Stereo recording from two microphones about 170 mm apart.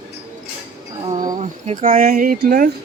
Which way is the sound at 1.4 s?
40° right (ahead or behind).